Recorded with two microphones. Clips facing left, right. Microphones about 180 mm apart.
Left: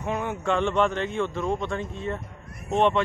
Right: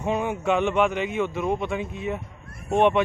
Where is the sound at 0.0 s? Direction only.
20° right (ahead or behind).